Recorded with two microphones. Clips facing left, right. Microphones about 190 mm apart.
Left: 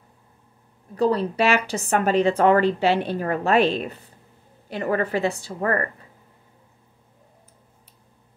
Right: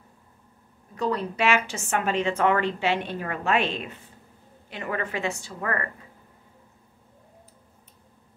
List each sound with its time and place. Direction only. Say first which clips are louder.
0.9 s a woman's voice: left 6 dB; 35° left (ahead or behind)